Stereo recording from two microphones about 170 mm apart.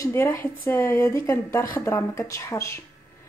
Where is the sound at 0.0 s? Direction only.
15° left (ahead or behind).